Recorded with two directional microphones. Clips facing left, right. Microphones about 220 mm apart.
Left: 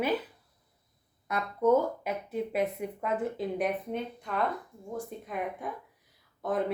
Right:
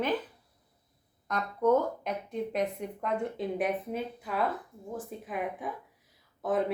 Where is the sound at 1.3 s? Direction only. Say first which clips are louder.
Left 1 dB; 10° left (ahead or behind).